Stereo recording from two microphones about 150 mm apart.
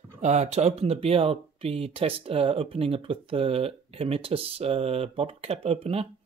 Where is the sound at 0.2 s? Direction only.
50° right (ahead or behind).